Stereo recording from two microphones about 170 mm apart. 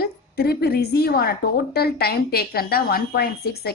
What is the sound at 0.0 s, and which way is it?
A woman's voice, 65° left (ahead or behind).